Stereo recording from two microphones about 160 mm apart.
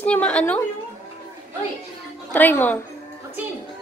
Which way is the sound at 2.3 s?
10° left (ahead or behind).